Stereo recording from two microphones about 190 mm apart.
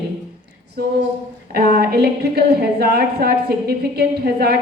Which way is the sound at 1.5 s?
55° right (ahead or behind).